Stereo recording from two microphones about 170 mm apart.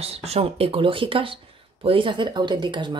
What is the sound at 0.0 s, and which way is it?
Speech, 35° right (ahead or behind).